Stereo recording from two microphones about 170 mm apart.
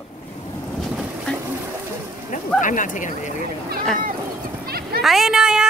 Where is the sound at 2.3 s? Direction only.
50° left (ahead or behind).